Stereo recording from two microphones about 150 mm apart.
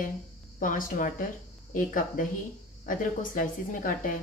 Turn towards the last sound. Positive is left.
turn(degrees=65)  # may be behind; listen again after turning